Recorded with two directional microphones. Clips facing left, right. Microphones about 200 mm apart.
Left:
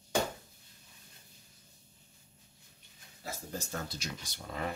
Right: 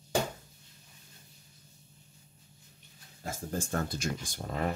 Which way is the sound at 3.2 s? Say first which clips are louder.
Right 5 dB; 50° right (ahead or behind).